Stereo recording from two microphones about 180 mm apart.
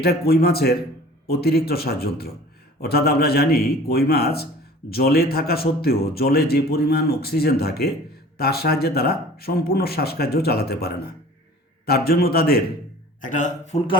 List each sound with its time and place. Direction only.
0.0 s speech: 60° left (ahead or behind)
13.2 s a man's voice: 45° left (ahead or behind)